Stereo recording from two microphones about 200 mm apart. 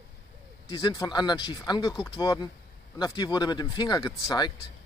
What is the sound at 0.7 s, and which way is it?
A man's voice, 20° left (ahead or behind).